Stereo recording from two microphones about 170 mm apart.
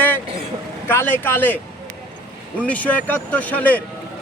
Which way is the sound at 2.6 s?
10° left (ahead or behind).